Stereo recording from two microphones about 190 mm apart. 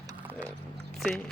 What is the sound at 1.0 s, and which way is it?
Speech, 5° left (ahead or behind).